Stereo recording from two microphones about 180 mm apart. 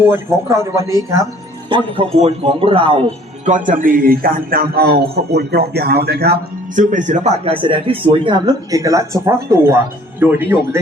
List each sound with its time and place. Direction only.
0.0 s speech: 15° right (ahead or behind)
1.7 s speech: 35° right (ahead or behind)
7.6 s speech: 30° right (ahead or behind); by 10.8 s 10° right (ahead or behind)